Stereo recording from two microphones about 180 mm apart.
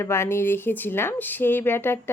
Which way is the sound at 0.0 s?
15° left (ahead or behind).